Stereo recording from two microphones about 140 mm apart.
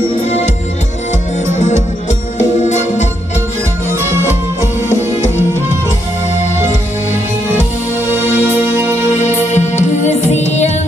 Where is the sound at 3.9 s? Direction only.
20° right (ahead or behind).